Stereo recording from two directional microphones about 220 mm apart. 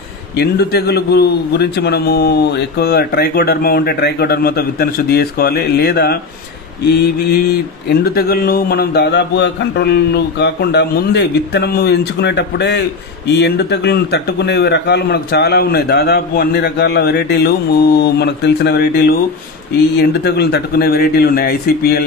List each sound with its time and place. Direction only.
0.4 s a man's voice: 45° left (ahead or behind)
7.2 s a man's voice: 45° left (ahead or behind)